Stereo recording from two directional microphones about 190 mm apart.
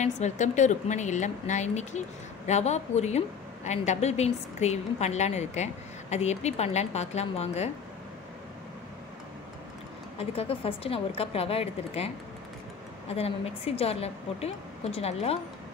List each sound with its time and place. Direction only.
0.0 s speech: 40° left (ahead or behind)
10.1 s speech: 30° left (ahead or behind)
13.1 s speech: 30° left (ahead or behind)